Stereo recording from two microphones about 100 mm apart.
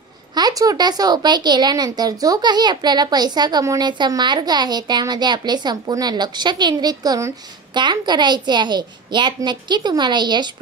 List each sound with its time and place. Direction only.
0.3 s speech: 40° right (ahead or behind)
7.7 s speech: 50° right (ahead or behind)